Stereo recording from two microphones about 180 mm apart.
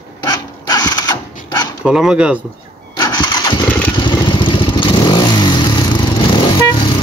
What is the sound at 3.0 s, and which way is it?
Engine starting, 25° left (ahead or behind).